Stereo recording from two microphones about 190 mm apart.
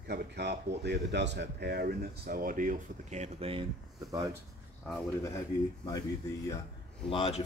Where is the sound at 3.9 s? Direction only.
20° right (ahead or behind).